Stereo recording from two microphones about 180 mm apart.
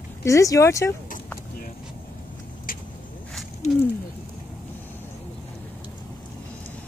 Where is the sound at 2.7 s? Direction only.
50° left (ahead or behind).